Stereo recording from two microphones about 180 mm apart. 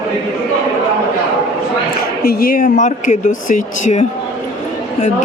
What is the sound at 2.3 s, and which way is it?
A man's voice, 55° left (ahead or behind).